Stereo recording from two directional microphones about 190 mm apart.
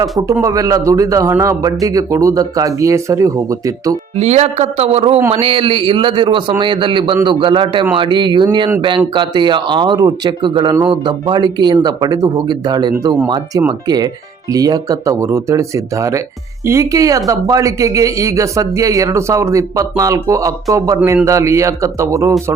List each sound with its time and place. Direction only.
0.4 s speech: 20° right (ahead or behind)
4.2 s a man's voice: 35° right (ahead or behind); by 22.5 s 15° right (ahead or behind)